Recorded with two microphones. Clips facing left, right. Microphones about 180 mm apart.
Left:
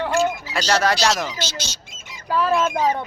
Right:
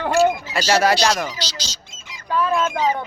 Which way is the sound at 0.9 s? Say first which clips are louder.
Right 1 dB; 5° left (ahead or behind).